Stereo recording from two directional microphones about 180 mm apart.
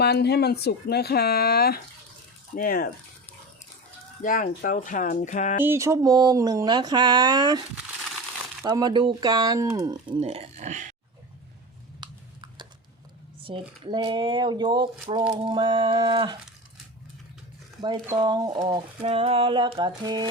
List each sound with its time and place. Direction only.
0.0 s speech: 65° left (ahead or behind)
4.2 s speech: 50° left (ahead or behind)
5.6 s speech: 15° right (ahead or behind)
8.6 s speech: 20° right (ahead or behind); by 10.9 s 45° right (ahead or behind)
11.9 s a sound: 25° right (ahead or behind)
13.4 s speech: 30° right (ahead or behind)
17.7 s speech: 25° right (ahead or behind)